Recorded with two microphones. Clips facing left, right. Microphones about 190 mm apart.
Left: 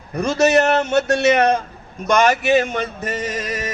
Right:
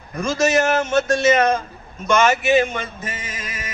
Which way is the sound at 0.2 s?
65° left (ahead or behind).